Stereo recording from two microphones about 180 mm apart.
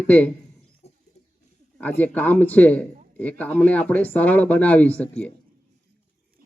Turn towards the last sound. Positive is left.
turn(degrees=10)  # may be behind; listen again after turning